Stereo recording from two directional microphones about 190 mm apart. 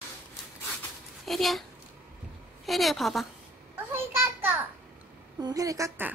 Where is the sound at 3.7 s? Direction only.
10° right (ahead or behind).